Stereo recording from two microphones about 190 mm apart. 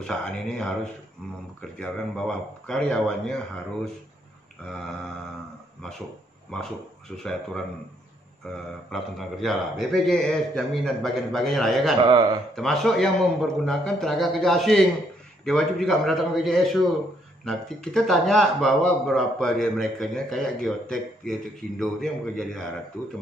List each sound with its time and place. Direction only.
0.0 s a man's voice: 5° left (ahead or behind)
6.5 s a man's voice: 5° left (ahead or behind)
8.9 s a man's voice: centre (ahead or behind)
12.0 s speech: 20° right (ahead or behind)
12.5 s a man's voice: centre (ahead or behind)